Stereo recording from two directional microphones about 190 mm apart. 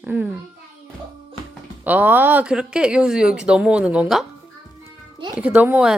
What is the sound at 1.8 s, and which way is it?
Speech, 10° right (ahead or behind).